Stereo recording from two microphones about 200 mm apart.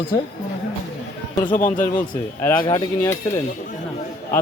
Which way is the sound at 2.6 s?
20° left (ahead or behind).